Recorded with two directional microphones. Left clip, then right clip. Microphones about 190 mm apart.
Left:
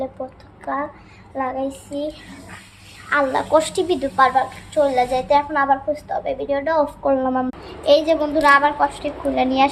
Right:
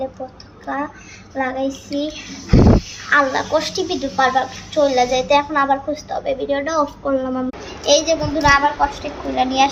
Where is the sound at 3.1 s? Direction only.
25° left (ahead or behind).